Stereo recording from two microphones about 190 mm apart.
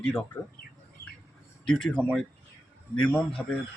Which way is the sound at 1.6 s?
5° left (ahead or behind).